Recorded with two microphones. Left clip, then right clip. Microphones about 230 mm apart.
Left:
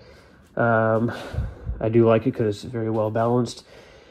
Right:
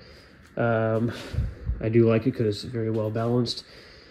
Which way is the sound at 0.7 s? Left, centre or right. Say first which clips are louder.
Left 6 dB; left.